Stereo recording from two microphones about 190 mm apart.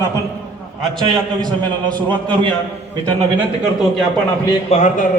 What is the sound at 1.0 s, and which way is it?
Speech, 25° right (ahead or behind).